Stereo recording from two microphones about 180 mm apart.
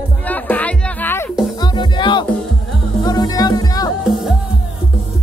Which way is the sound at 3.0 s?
20° left (ahead or behind).